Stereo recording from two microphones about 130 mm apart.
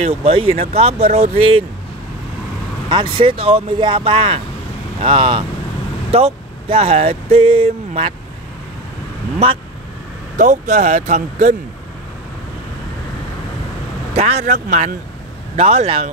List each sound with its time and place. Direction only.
0.0 s speech: 50° right (ahead or behind)
2.9 s speech: 40° right (ahead or behind)
6.1 s speech: 50° right (ahead or behind)
10.3 s speech: 75° right (ahead or behind)
14.1 s speech: 55° right (ahead or behind)